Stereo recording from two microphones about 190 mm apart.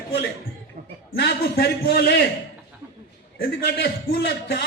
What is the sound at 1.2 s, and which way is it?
A man's voice, 55° left (ahead or behind).